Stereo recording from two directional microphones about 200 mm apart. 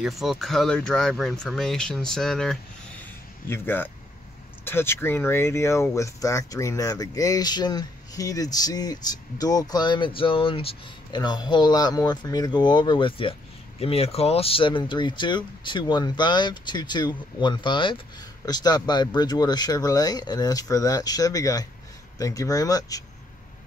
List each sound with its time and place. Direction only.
0.0 s speech: centre (ahead or behind); by 23.0 s 15° left (ahead or behind)